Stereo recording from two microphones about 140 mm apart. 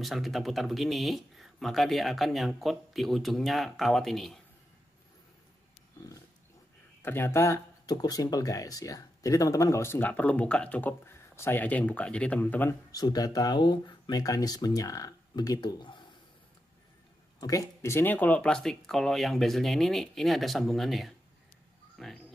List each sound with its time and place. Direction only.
0.0 s speech: centre (ahead or behind)
7.0 s speech: 15° left (ahead or behind)
12.9 s speech: 25° left (ahead or behind)
17.4 s speech: 25° left (ahead or behind); by 21.1 s centre (ahead or behind)
21.9 s a sound: centre (ahead or behind)